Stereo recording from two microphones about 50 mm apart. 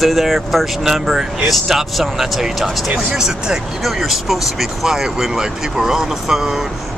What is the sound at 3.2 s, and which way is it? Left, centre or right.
Speech, centre.